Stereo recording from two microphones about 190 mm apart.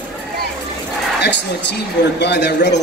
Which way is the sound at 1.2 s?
65° left (ahead or behind).